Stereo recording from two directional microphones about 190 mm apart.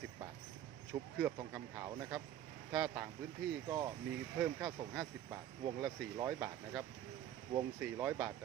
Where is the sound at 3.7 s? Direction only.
20° right (ahead or behind).